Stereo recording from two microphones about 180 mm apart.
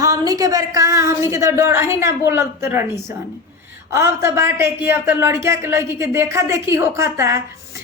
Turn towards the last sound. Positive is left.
turn(degrees=-15)  # may be behind; listen again after turning